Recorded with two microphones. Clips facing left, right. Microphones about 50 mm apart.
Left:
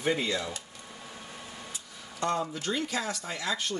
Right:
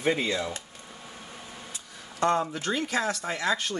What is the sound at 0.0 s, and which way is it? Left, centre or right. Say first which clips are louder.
Speech: right 2 dB; right.